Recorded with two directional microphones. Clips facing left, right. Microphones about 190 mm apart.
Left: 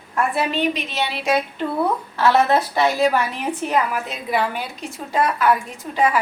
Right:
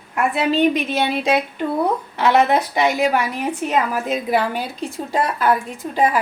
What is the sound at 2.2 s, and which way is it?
A woman's voice, 15° right (ahead or behind).